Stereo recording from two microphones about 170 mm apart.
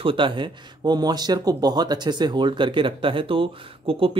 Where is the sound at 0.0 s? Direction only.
30° right (ahead or behind).